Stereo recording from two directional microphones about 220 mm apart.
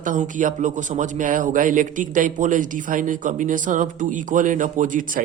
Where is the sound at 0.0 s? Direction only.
35° right (ahead or behind).